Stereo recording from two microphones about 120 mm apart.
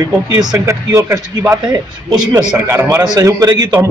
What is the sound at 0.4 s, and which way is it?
Speech, 30° right (ahead or behind).